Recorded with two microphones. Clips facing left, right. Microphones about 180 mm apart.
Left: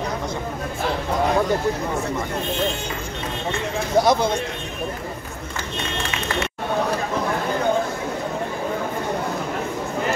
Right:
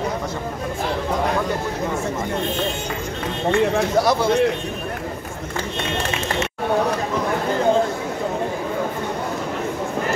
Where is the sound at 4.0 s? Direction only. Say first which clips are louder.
Left 3 dB; 20° left (ahead or behind).